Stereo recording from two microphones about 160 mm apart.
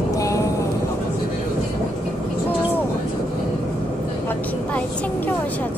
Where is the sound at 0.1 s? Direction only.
20° left (ahead or behind).